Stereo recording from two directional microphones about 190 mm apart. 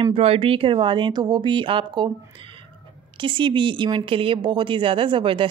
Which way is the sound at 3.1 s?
25° right (ahead or behind).